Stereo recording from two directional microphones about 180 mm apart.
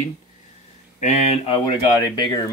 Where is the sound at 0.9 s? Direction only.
35° left (ahead or behind).